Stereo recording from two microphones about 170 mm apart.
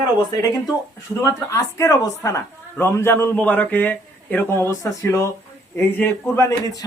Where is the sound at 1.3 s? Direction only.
20° left (ahead or behind).